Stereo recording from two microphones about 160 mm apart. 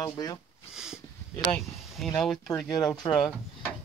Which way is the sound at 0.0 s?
25° left (ahead or behind).